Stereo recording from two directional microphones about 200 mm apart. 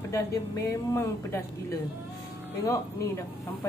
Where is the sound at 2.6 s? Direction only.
15° left (ahead or behind).